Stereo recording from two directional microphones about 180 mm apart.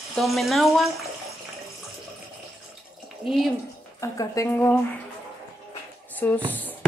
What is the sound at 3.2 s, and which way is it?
Speech, centre (ahead or behind).